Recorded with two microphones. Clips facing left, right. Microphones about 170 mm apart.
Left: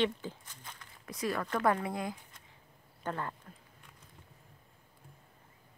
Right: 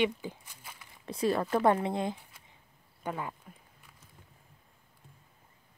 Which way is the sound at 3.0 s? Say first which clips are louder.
Right 1 dB; 10° right (ahead or behind).